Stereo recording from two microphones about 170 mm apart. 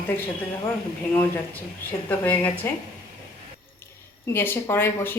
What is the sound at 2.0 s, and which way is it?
Speech, 10° left (ahead or behind).